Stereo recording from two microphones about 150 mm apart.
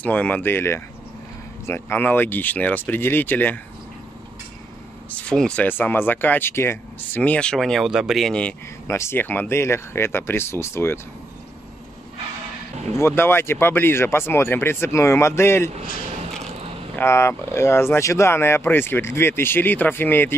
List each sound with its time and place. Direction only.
0.0 s speech: 10° left (ahead or behind)
5.1 s speech: 5° left (ahead or behind)
8.8 s speech: 20° left (ahead or behind)
12.9 s speech: 15° left (ahead or behind)
16.9 s speech: 15° left (ahead or behind)